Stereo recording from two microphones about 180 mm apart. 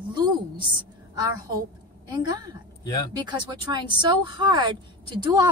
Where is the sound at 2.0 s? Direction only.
25° right (ahead or behind).